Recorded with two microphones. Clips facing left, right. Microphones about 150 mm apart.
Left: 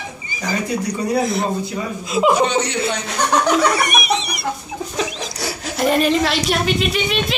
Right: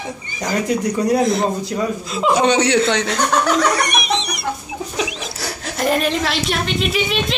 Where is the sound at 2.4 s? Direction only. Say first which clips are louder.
Right 4 dB; 80° right.